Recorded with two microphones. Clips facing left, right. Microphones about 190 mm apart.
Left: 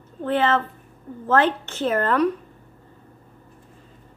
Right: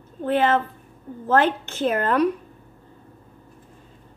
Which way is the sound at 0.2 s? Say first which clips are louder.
Right 1 dB; 10° right (ahead or behind).